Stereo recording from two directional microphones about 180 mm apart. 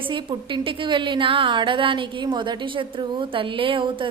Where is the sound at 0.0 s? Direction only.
30° right (ahead or behind).